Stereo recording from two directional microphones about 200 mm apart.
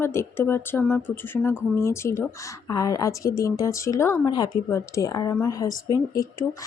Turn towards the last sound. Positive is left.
turn(degrees=15)  # may be behind; listen again after turning